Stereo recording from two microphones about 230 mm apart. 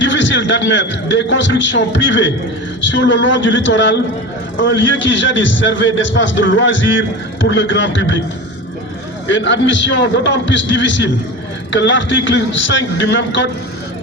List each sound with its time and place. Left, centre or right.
0.0 s a man's voice: left
9.2 s a man's voice: left